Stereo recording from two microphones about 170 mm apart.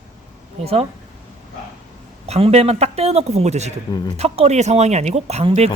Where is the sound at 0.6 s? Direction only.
35° right (ahead or behind).